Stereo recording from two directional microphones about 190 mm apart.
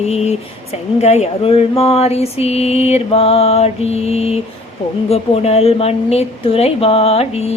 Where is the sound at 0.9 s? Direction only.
35° left (ahead or behind).